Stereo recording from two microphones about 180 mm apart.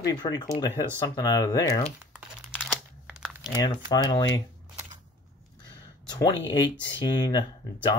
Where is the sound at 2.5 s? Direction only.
5° left (ahead or behind).